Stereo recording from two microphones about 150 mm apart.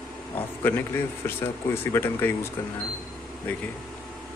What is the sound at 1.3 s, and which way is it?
Speech, 15° left (ahead or behind).